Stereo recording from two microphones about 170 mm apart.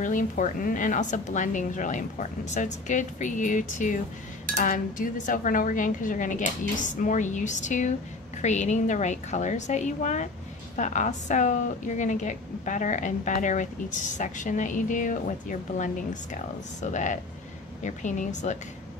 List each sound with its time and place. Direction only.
0.0 s a woman's voice: 50° left (ahead or behind)